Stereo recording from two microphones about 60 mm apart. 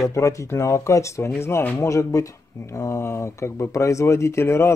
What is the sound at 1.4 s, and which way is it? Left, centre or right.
Speech, left.